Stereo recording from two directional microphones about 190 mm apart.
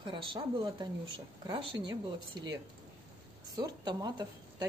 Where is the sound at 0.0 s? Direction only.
25° right (ahead or behind).